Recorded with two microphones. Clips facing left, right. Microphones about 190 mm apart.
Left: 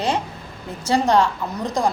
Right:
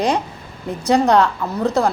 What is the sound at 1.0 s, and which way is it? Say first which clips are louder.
Speech: right 3 dB; 10° left (ahead or behind).